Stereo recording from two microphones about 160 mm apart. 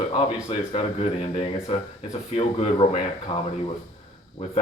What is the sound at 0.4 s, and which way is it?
Speech, 40° left (ahead or behind).